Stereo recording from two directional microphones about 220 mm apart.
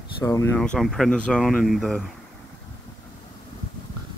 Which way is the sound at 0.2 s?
15° left (ahead or behind).